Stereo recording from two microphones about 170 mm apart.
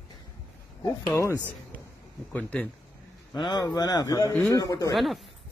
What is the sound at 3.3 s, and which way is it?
A man's voice, 25° left (ahead or behind).